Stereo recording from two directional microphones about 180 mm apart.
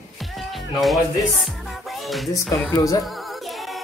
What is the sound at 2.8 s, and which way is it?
Music, 20° left (ahead or behind).